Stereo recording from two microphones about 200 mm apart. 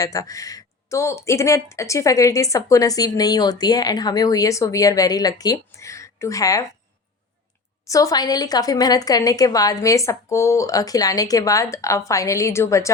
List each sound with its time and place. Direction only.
0.0 s speech: 15° left (ahead or behind)
7.9 s speech: 15° left (ahead or behind)